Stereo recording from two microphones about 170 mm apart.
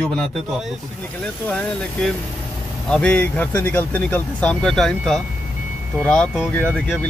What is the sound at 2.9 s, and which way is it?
Speech, 5° left (ahead or behind).